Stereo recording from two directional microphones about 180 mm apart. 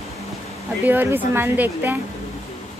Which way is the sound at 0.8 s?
10° right (ahead or behind).